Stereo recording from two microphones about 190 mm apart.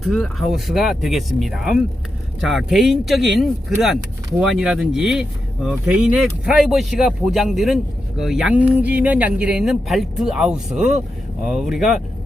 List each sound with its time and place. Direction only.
0.0 s speech: centre (ahead or behind)